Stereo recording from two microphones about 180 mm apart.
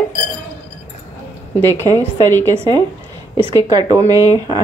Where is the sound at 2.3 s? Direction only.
10° left (ahead or behind).